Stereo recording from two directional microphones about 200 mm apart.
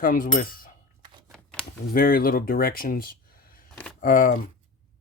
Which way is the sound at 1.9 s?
45° left (ahead or behind).